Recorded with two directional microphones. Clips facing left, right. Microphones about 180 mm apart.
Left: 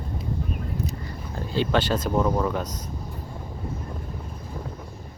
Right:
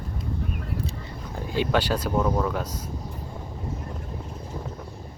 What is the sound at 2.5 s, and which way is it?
Speech, 10° right (ahead or behind).